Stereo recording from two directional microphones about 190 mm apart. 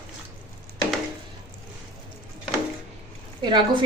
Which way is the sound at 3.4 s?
25° right (ahead or behind).